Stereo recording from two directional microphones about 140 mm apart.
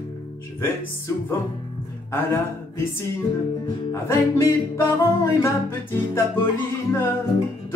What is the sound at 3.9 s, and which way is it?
Music, 20° left (ahead or behind).